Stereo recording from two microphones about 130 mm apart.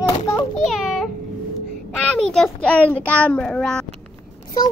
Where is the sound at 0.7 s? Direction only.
Centre (ahead or behind).